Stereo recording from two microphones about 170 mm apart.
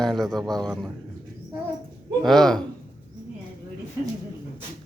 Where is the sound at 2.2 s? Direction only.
Centre (ahead or behind).